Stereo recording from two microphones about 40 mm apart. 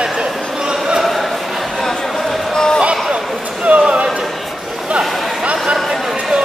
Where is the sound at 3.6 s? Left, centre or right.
Right.